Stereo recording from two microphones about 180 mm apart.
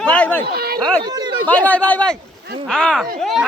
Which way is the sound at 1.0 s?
25° right (ahead or behind).